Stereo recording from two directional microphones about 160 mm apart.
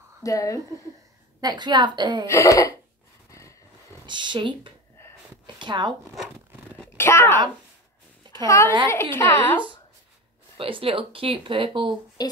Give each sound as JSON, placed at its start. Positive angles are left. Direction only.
{"t": 0.2, "sound": "speech", "side_deg": 20}
{"t": 1.4, "sound": "a woman's voice", "side_deg": -25}
{"t": 2.2, "sound": "speech", "side_deg": 20}
{"t": 3.3, "sound": "a sound", "side_deg": 20}
{"t": 4.0, "sound": "a woman's voice", "side_deg": -30}
{"t": 6.8, "sound": "a sound", "side_deg": 15}
{"t": 8.3, "sound": "a sound", "side_deg": -30}
{"t": 8.8, "sound": "a woman's voice", "side_deg": 15}
{"t": 10.6, "sound": "speech", "side_deg": -35}
{"t": 12.2, "sound": "speech", "side_deg": 25}